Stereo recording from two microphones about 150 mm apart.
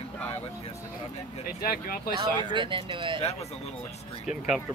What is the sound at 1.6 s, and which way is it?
Speech, 75° left (ahead or behind).